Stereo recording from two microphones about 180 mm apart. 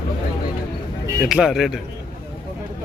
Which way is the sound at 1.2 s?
5° right (ahead or behind).